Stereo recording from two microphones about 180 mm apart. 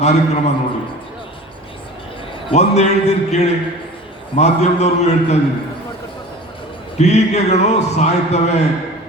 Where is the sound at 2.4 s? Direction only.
40° left (ahead or behind).